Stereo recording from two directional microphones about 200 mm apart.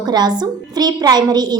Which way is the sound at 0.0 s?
20° right (ahead or behind).